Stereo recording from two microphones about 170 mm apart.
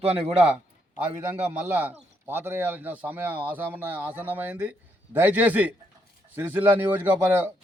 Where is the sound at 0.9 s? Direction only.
10° right (ahead or behind).